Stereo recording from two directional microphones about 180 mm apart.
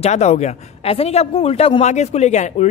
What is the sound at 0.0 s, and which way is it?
A man's voice, 35° left (ahead or behind).